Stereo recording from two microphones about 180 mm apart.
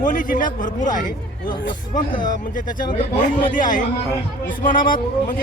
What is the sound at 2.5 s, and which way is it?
Speech, 50° left (ahead or behind).